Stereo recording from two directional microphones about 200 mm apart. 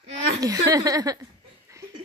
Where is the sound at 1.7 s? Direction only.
15° right (ahead or behind).